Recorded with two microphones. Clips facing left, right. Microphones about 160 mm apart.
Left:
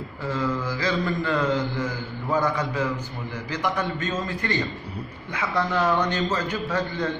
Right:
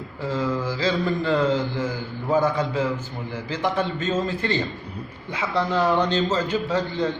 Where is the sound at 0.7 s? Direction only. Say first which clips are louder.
Right 2 dB; 25° right (ahead or behind).